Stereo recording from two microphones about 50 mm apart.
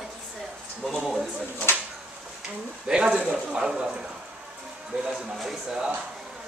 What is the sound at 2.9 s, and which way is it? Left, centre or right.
Speech, centre.